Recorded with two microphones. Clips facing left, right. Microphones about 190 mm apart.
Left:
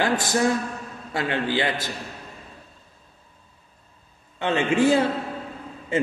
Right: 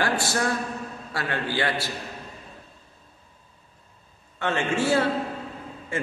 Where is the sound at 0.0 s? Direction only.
20° left (ahead or behind).